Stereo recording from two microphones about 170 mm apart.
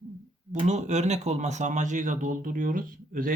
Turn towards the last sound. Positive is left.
turn(degrees=-55)  # may be behind; listen again after turning